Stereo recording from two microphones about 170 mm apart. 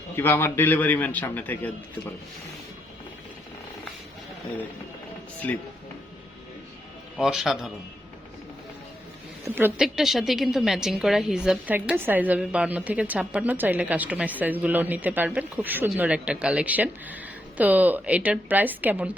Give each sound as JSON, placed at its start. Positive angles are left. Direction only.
{"t": 0.2, "sound": "a man's voice", "side_deg": 15}
{"t": 5.4, "sound": "a man's voice", "side_deg": 10}
{"t": 7.2, "sound": "a man's voice", "side_deg": -5}
{"t": 9.4, "sound": "a woman's voice", "side_deg": -10}